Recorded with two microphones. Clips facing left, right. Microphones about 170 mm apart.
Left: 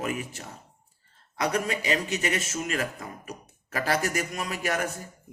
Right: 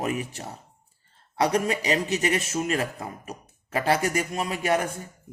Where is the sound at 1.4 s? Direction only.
30° right (ahead or behind).